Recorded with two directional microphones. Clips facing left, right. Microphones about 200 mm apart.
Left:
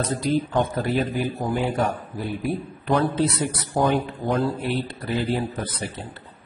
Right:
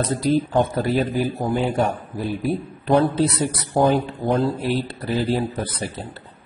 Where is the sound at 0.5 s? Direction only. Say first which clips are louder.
Right 3 dB; 30° right (ahead or behind).